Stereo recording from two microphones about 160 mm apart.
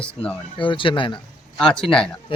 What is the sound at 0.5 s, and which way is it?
Speech, 30° left (ahead or behind).